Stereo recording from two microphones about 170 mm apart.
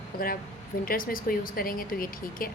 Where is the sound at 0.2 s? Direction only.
60° left (ahead or behind).